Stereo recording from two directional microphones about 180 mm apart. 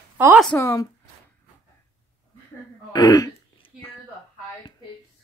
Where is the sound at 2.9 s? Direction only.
20° left (ahead or behind).